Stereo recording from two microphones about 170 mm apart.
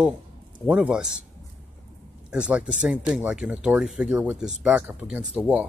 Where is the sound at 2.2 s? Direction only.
5° right (ahead or behind).